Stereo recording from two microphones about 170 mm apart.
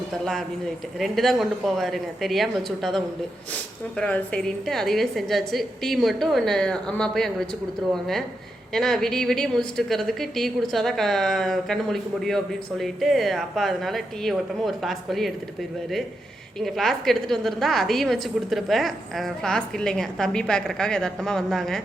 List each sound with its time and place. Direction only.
0.9 s a woman's voice: centre (ahead or behind)
16.6 s a woman's voice: centre (ahead or behind)